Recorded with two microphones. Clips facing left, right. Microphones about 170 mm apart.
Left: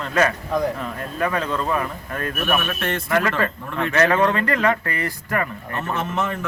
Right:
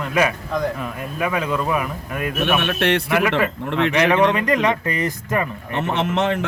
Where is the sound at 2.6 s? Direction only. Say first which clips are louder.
Right 6 dB; 70° right (ahead or behind).